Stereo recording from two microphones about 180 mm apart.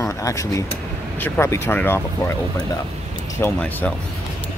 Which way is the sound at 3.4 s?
10° left (ahead or behind).